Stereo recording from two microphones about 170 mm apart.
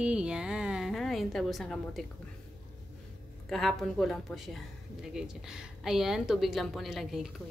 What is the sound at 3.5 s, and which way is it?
Speech, centre (ahead or behind).